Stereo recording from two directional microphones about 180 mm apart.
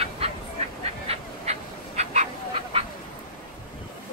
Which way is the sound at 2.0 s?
40° right (ahead or behind).